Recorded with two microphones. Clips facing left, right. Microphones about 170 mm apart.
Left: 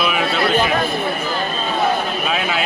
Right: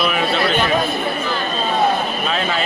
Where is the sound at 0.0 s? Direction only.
Centre (ahead or behind).